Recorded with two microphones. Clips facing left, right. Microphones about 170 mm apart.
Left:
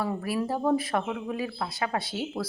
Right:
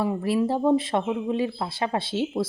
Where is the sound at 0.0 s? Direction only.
25° right (ahead or behind).